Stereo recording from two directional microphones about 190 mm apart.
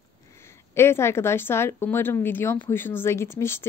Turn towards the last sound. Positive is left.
turn(degrees=15)  # may be behind; listen again after turning